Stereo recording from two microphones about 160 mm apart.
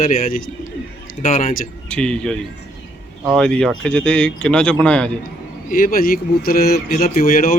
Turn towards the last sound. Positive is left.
turn(degrees=65)  # may be behind; listen again after turning